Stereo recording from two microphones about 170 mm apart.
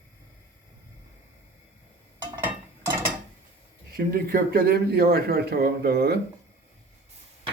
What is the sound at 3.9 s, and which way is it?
A man's voice, 60° right (ahead or behind).